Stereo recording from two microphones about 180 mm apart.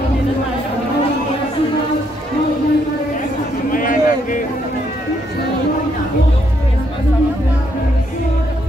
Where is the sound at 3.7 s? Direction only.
50° left (ahead or behind).